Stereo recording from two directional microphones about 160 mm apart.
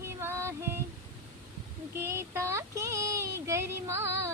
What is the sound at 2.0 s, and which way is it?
Child singing, 15° right (ahead or behind).